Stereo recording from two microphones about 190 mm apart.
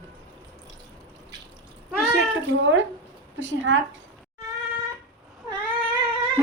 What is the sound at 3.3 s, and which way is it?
Speech, 75° right (ahead or behind).